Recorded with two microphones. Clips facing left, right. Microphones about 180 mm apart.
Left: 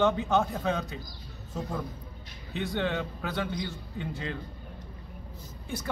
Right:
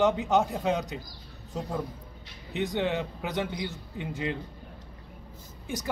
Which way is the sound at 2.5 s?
20° right (ahead or behind).